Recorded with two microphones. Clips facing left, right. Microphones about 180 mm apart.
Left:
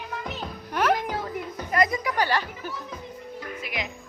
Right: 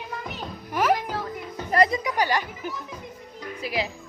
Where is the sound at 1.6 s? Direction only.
35° right (ahead or behind).